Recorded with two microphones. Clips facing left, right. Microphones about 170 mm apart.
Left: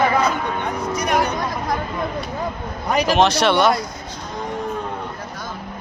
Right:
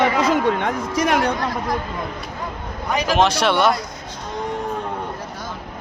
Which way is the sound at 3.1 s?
5° right (ahead or behind).